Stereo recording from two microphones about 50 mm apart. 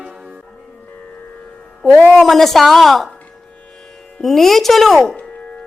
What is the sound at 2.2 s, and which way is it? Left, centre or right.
Speech, centre.